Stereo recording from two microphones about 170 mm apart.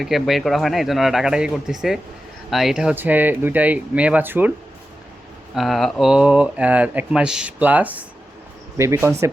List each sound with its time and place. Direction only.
0.0 s speech: centre (ahead or behind)
5.5 s speech: centre (ahead or behind); by 9.3 s 15° right (ahead or behind)